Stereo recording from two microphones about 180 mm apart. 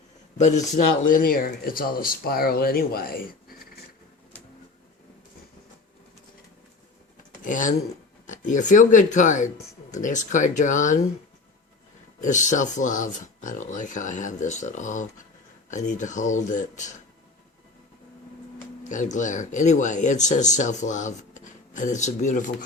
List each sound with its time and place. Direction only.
0.3 s speech: 40° left (ahead or behind)
7.4 s speech: 45° left (ahead or behind)
12.2 s speech: 40° left (ahead or behind)
18.9 s speech: 45° left (ahead or behind)